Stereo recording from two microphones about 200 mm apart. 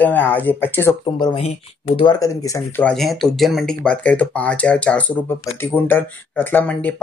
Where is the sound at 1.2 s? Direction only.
30° left (ahead or behind).